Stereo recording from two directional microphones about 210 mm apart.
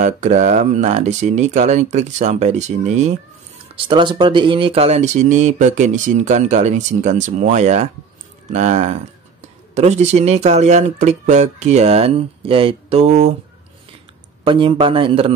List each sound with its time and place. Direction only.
0.0 s speech: 35° right (ahead or behind)
14.4 s a man's voice: 25° right (ahead or behind)